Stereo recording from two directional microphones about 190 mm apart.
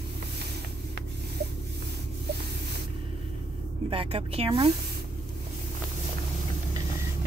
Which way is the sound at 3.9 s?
30° right (ahead or behind).